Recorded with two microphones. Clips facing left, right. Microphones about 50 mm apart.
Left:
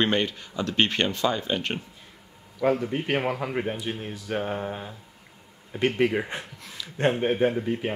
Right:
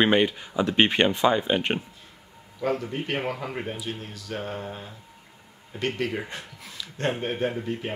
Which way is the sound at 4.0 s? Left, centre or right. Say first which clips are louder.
Left 4 dB; left.